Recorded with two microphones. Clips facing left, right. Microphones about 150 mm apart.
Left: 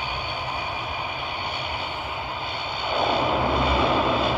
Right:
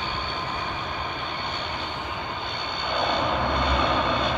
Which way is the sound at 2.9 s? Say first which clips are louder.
Left 3 dB; 5° left (ahead or behind).